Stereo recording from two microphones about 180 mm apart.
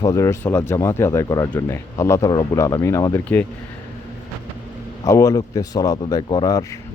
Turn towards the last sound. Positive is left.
turn(degrees=20)  # may be behind; listen again after turning